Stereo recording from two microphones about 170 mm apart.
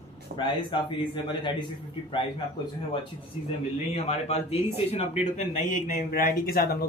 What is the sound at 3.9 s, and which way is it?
Speech, 40° left (ahead or behind).